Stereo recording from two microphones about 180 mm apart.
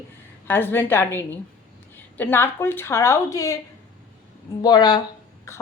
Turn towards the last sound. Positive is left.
turn(degrees=25)  # may be behind; listen again after turning